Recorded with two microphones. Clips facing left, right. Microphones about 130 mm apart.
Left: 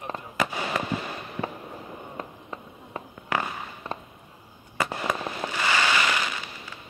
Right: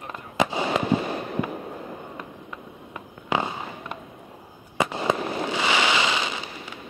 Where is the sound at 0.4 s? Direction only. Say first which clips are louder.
Right 5 dB; 25° right (ahead or behind).